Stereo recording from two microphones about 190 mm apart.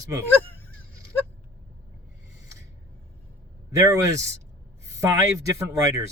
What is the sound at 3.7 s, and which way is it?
Speech, 15° right (ahead or behind).